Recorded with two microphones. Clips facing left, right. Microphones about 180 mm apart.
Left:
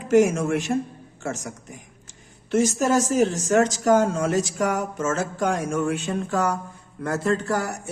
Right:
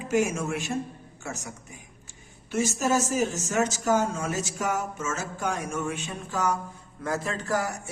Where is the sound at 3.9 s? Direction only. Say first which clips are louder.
Left 6 dB; 55° left (ahead or behind).